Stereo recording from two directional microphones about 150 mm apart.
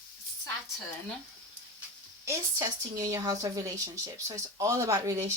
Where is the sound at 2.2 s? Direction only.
20° right (ahead or behind).